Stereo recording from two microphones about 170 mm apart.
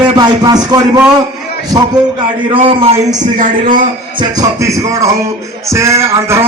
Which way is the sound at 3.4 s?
50° right (ahead or behind).